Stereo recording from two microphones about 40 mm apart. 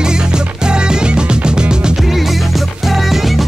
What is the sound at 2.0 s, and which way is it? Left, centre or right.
Music, centre.